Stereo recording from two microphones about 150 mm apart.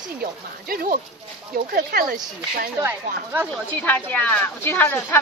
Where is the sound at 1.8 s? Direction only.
80° right.